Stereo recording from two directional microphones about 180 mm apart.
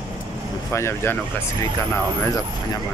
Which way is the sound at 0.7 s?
15° left (ahead or behind).